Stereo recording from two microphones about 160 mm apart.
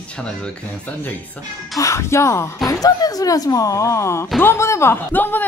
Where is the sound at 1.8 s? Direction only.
20° left (ahead or behind).